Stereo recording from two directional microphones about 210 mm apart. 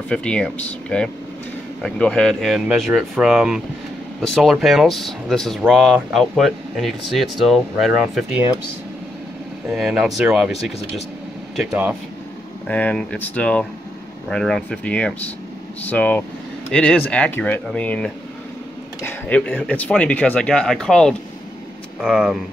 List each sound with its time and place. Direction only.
0.1 s speech: 5° left (ahead or behind)
9.7 s speech: centre (ahead or behind)